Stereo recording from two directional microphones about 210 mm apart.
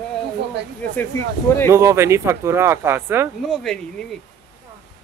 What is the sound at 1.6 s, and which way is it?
Speech, 15° right (ahead or behind).